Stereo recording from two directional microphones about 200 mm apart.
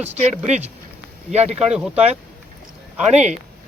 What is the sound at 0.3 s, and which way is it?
Speech, 35° right (ahead or behind).